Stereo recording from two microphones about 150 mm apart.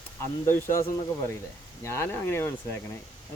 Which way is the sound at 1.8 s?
15° left (ahead or behind).